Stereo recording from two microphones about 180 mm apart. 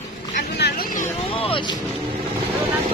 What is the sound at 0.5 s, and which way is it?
Speech, 65° left (ahead or behind).